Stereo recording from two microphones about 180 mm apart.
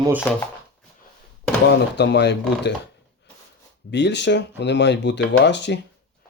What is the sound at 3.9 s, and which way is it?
Speech, 75° left (ahead or behind).